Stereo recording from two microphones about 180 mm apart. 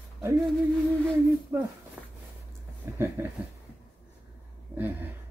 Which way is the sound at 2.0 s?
10° right (ahead or behind).